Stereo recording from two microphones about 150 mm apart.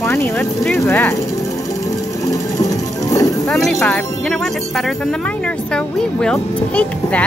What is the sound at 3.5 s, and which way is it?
Speech, 5° left (ahead or behind).